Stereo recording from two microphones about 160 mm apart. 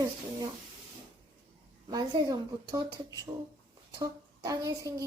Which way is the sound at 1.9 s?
20° right (ahead or behind).